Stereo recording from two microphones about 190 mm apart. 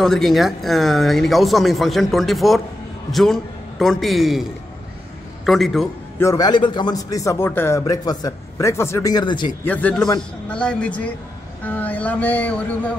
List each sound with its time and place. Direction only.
0.0 s a man's voice: centre (ahead or behind)
6.1 s a man's voice: 15° left (ahead or behind)
9.7 s a man's voice: 10° left (ahead or behind)